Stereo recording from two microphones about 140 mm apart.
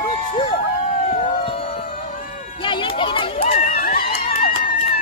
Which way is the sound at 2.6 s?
35° left (ahead or behind).